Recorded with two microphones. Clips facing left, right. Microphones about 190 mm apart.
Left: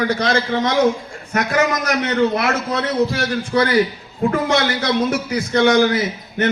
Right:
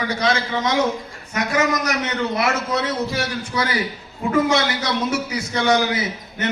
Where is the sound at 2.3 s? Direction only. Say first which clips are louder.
Left 2 dB; 60° left (ahead or behind).